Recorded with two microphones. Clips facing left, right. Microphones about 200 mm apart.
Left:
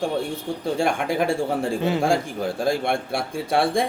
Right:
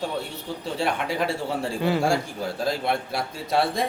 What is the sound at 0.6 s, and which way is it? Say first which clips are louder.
Speech: left 3 dB; 50° left (ahead or behind).